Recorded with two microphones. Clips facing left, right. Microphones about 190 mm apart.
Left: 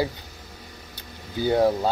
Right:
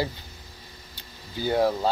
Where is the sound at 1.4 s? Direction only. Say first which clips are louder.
Left 3 dB; 20° left (ahead or behind).